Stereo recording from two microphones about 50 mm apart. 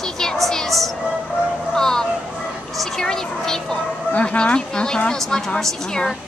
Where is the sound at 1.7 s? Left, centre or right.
Centre.